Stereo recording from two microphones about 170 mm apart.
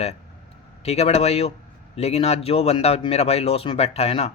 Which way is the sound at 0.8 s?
35° left (ahead or behind).